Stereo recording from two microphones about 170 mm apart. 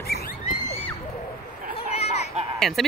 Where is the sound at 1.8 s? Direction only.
35° left (ahead or behind).